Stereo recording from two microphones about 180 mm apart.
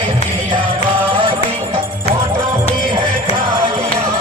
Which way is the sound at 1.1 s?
30° right (ahead or behind).